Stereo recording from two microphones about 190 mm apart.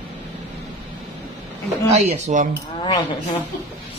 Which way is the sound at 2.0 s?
35° right (ahead or behind).